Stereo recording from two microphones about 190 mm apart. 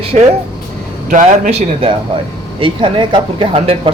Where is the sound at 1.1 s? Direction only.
45° right (ahead or behind).